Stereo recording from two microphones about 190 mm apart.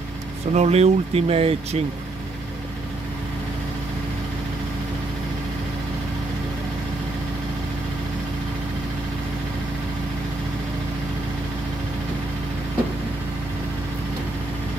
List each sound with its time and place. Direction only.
0.5 s speech: 35° right (ahead or behind)